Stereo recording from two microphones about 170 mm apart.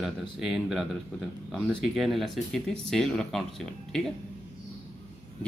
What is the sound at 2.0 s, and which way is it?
Speech, centre (ahead or behind).